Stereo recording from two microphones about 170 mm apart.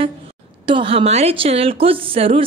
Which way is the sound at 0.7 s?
30° right (ahead or behind).